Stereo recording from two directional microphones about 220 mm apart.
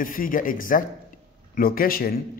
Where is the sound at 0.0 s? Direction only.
40° left (ahead or behind).